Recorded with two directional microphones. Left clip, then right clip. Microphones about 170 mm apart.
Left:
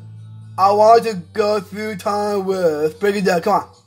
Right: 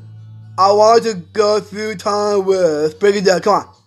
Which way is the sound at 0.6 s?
25° right (ahead or behind).